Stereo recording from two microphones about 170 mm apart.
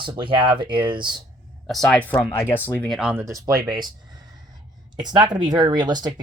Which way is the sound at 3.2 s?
20° right (ahead or behind).